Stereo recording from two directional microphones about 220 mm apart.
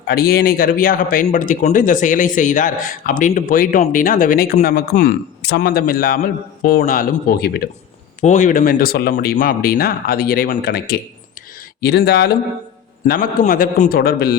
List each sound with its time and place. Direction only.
0.1 s speech: 45° left (ahead or behind)
8.2 s speech: 35° left (ahead or behind)